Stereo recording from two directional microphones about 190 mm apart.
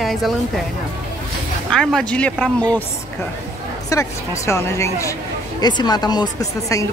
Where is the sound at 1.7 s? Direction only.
5° left (ahead or behind).